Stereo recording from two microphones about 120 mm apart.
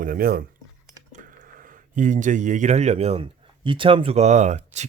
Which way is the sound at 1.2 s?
90° right.